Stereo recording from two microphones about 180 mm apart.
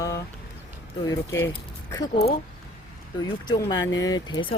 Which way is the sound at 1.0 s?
15° left (ahead or behind).